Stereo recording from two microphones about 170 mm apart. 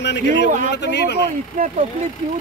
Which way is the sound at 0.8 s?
80° left.